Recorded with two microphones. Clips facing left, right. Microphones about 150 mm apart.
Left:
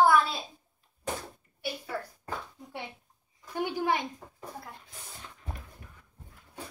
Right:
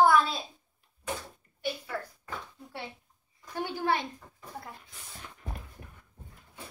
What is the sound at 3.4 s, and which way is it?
Speech, 15° left (ahead or behind).